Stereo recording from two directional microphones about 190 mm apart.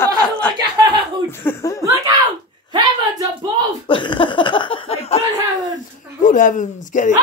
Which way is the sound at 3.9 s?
25° left (ahead or behind).